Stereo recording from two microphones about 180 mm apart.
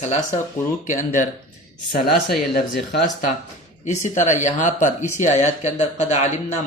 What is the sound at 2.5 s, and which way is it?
Speech, 65° left (ahead or behind).